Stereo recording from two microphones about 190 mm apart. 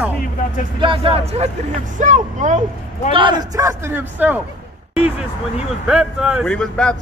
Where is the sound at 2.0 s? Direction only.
40° right (ahead or behind).